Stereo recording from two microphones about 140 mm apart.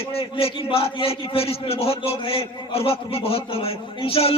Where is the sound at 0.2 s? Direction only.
45° left (ahead or behind).